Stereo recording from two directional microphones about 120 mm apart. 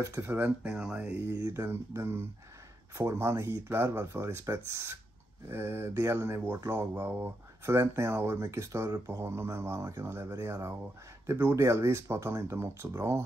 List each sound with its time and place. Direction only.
0.0 s speech: 20° right (ahead or behind)